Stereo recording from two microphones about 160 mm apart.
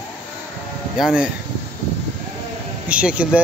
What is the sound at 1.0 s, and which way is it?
Speech, 5° right (ahead or behind).